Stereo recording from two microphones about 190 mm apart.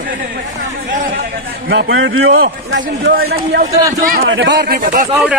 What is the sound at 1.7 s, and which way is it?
A man's voice, 80° right.